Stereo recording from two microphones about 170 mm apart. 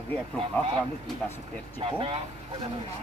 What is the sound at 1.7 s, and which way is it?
Speech, 30° right (ahead or behind).